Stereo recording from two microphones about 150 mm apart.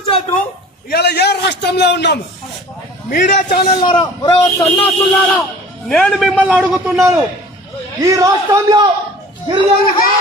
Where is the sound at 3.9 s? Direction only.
30° left (ahead or behind).